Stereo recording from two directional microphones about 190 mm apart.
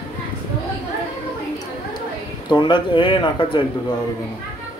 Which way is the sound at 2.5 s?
25° left (ahead or behind).